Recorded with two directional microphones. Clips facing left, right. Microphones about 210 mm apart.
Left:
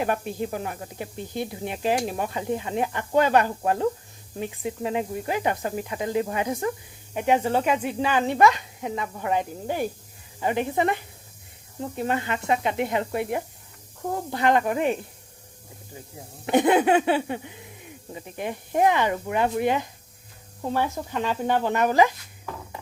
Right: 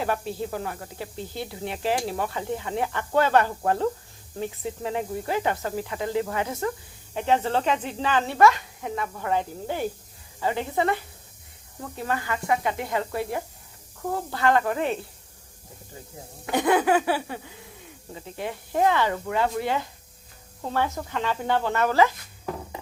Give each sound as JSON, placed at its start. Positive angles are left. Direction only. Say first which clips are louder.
{"t": 0.0, "sound": "speech", "louder": "left 2 dB", "side_deg": 15}
{"t": 16.5, "sound": "speech", "louder": "left 2 dB", "side_deg": 20}